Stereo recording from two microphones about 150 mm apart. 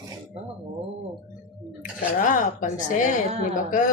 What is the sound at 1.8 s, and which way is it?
A woman's voice, 60° left (ahead or behind).